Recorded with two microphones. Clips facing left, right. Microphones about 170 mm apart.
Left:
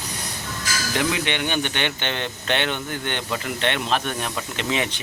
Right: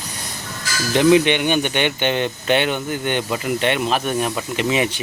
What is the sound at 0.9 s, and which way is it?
Speech, 20° right (ahead or behind).